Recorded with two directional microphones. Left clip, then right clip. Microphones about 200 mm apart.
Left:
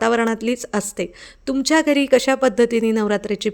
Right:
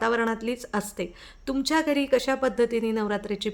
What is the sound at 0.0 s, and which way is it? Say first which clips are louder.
A woman's voice: left 6 dB; 35° left (ahead or behind).